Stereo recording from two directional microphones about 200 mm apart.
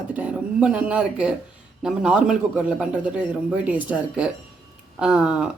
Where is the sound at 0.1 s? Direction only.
5° right (ahead or behind).